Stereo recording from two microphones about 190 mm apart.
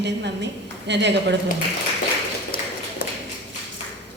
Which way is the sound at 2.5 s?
50° left (ahead or behind).